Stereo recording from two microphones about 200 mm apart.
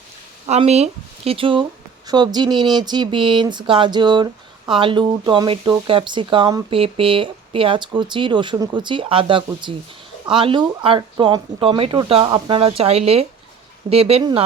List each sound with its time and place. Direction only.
0.4 s speech: 35° right (ahead or behind)